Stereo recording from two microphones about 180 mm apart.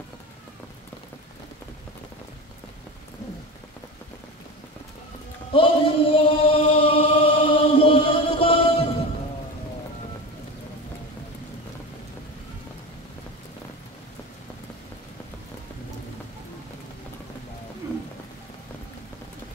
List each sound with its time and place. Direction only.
5.5 s chant: 30° left (ahead or behind)